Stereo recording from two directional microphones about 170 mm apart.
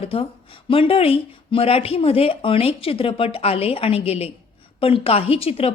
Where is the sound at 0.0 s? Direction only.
35° left (ahead or behind).